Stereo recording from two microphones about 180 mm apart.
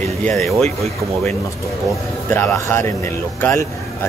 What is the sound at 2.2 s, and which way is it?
Speech, 10° left (ahead or behind).